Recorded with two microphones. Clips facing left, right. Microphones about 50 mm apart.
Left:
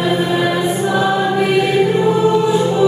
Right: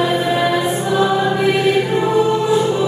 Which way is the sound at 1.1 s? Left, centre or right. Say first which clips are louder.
Left 1 dB; centre.